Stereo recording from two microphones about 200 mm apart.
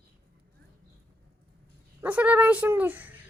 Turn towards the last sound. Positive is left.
turn(degrees=-10)  # may be behind; listen again after turning